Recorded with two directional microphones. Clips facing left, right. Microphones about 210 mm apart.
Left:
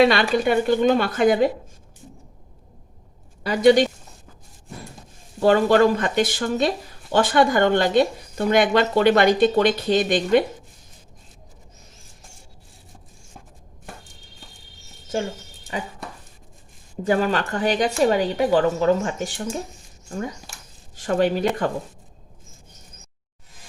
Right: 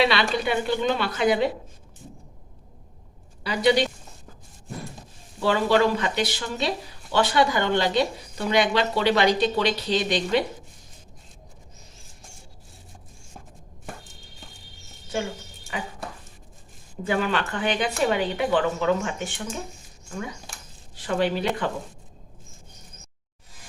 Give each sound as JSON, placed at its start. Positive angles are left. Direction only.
{"t": 0.0, "sound": "speech", "side_deg": 50}
{"t": 3.4, "sound": "speech", "side_deg": 45}
{"t": 5.4, "sound": "speech", "side_deg": 45}
{"t": 17.0, "sound": "speech", "side_deg": 40}